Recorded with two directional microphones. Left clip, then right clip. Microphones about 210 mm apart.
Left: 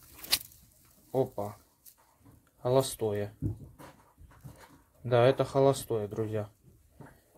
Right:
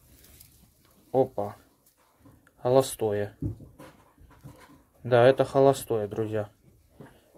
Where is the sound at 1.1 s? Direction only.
20° right (ahead or behind).